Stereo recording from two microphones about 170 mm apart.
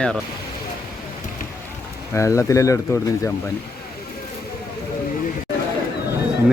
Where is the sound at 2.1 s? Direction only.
15° left (ahead or behind).